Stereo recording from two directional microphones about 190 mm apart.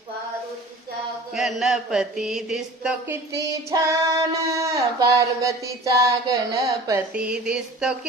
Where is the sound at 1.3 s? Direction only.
Centre (ahead or behind).